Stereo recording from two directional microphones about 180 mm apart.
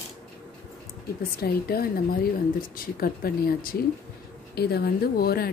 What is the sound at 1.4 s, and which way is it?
Speech, 60° left (ahead or behind).